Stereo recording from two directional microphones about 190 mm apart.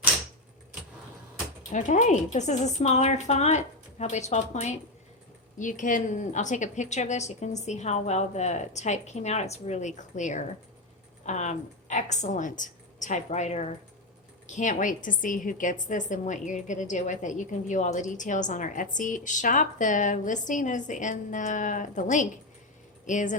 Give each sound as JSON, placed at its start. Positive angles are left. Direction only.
{"t": 1.7, "sound": "a woman's voice", "side_deg": 40}